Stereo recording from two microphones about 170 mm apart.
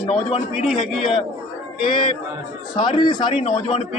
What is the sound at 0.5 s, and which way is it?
Speech, centre (ahead or behind).